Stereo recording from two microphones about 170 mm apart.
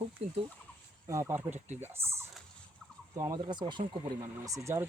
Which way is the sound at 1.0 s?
15° right (ahead or behind).